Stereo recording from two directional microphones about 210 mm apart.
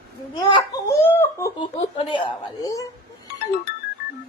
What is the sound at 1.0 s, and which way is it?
A woman's voice, 10° left (ahead or behind).